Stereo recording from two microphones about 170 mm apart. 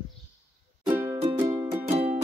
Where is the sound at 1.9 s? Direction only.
40° right (ahead or behind).